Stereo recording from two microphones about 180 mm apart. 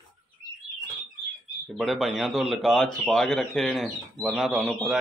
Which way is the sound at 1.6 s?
Centre (ahead or behind).